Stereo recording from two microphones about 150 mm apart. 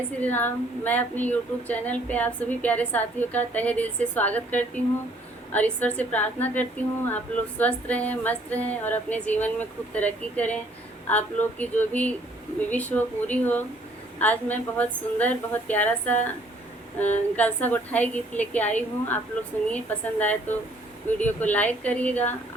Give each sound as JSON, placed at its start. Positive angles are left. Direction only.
{"t": 0.2, "sound": "speech", "side_deg": 10}